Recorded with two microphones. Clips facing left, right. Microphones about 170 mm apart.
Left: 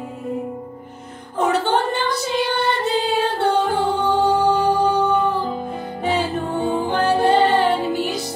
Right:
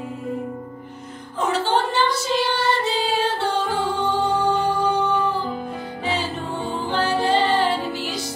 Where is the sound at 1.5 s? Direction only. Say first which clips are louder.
Left 2 dB; 60° left (ahead or behind).